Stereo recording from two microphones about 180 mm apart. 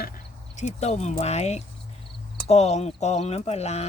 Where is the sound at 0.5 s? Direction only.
40° left (ahead or behind).